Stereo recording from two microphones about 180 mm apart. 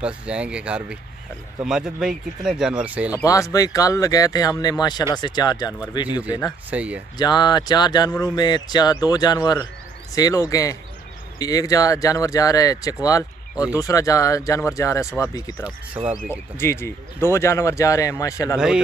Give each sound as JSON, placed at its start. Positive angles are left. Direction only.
{"t": 0.0, "sound": "speech", "side_deg": -5}
{"t": 3.1, "sound": "speech", "side_deg": 20}
{"t": 6.7, "sound": "speech", "side_deg": -5}
{"t": 7.2, "sound": "speech", "side_deg": 25}